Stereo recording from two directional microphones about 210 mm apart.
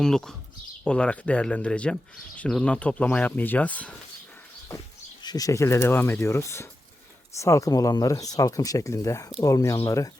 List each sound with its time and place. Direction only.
0.0 s speech: 5° left (ahead or behind)
5.2 s speech: 20° left (ahead or behind)